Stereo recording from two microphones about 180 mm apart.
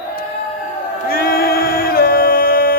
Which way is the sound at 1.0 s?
55° left (ahead or behind).